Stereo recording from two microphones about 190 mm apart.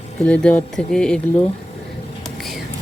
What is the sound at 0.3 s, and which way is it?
Speech, 5° left (ahead or behind).